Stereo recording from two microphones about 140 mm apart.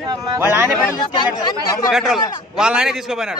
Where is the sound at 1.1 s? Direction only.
30° left (ahead or behind).